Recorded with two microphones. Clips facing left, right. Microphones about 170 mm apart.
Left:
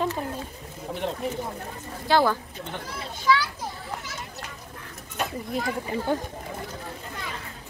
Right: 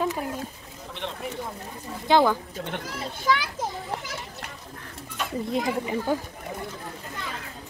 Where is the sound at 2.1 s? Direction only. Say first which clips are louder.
Right 2 dB; 15° right (ahead or behind).